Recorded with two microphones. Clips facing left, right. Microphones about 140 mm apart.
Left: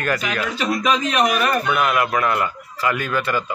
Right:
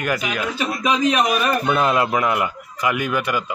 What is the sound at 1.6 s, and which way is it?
Speech, 25° right (ahead or behind).